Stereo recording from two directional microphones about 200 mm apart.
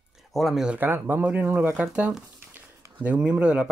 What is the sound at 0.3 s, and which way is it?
Speech, centre (ahead or behind).